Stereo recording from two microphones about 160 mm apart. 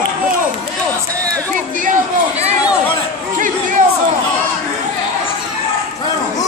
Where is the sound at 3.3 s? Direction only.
55° right (ahead or behind).